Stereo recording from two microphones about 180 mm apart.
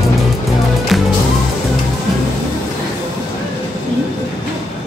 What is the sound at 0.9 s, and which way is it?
Music, centre (ahead or behind).